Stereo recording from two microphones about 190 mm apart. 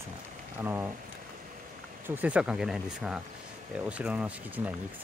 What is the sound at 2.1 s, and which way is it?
Speech, 10° right (ahead or behind).